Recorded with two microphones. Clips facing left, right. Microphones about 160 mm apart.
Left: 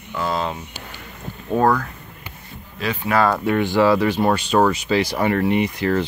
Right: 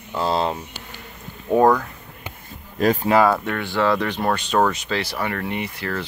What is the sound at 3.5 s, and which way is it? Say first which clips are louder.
Speech: left 5 dB; 15° left (ahead or behind).